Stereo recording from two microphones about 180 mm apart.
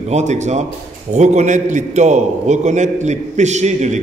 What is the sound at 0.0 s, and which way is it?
A man's voice, 40° right (ahead or behind).